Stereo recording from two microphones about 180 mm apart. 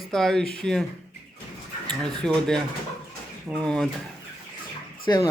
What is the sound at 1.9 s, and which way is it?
Speech, 5° left (ahead or behind).